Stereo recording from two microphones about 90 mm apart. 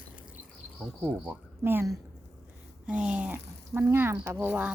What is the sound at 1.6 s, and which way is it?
Speech, 25° right (ahead or behind).